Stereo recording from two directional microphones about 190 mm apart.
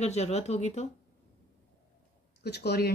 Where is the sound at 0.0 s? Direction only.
35° left (ahead or behind).